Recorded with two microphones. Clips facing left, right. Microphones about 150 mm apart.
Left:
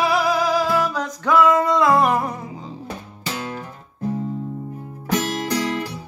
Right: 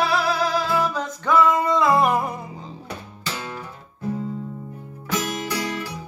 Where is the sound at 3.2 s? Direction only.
50° left (ahead or behind).